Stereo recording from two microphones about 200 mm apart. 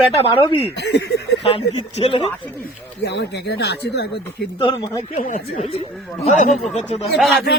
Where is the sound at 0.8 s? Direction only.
55° left (ahead or behind).